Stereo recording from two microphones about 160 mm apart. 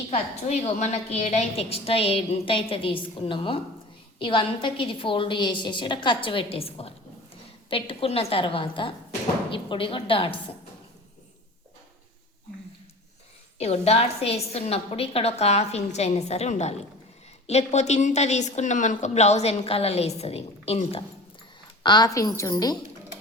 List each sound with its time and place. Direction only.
0.1 s a woman's voice: 45° left (ahead or behind)
13.6 s a woman's voice: 40° left (ahead or behind)
21.8 s a woman's voice: 25° left (ahead or behind)